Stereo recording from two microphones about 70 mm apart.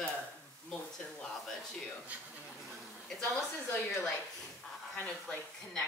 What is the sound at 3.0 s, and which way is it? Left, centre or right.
Speech, centre.